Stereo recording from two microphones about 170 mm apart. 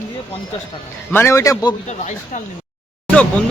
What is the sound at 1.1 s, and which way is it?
Speech, 15° left (ahead or behind).